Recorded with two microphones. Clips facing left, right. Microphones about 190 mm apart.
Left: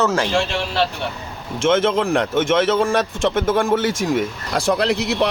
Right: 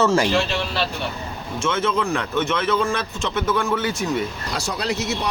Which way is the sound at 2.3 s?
45° left (ahead or behind).